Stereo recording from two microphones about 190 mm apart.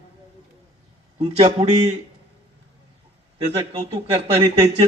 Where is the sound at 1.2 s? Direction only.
30° right (ahead or behind).